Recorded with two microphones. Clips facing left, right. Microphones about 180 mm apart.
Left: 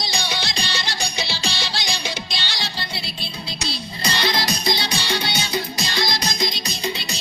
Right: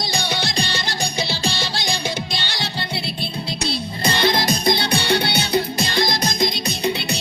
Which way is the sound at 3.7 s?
55° right (ahead or behind).